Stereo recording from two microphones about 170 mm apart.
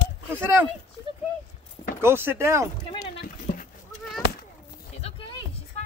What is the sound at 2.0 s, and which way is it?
Speech, 15° right (ahead or behind).